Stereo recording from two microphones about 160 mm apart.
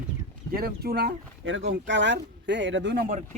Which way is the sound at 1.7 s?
90° right.